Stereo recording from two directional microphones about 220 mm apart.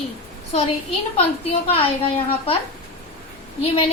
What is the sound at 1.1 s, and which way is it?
A woman's voice, 25° left (ahead or behind).